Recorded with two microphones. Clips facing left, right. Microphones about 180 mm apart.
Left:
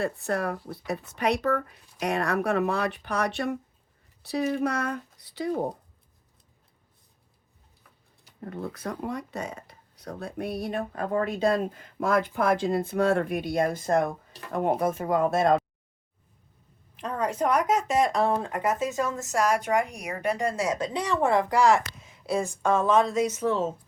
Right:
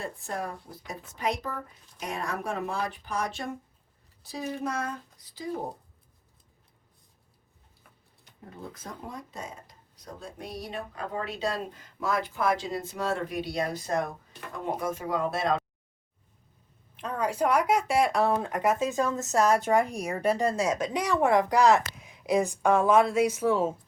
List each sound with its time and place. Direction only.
0.0 s speech: 70° left (ahead or behind)
8.4 s speech: 65° left (ahead or behind); by 15.6 s 50° left (ahead or behind)
17.1 s a woman's voice: 5° right (ahead or behind)
19.3 s a woman's voice: 25° right (ahead or behind)
20.8 s a woman's voice: 10° right (ahead or behind)